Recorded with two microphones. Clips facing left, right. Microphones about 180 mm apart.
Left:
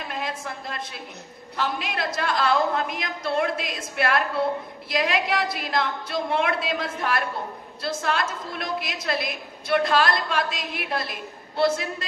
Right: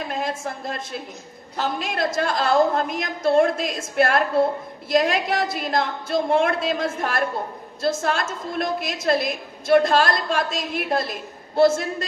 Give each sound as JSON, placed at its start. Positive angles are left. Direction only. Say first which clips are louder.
{"t": 0.1, "sound": "a woman's voice", "louder": "right 4 dB", "side_deg": -45}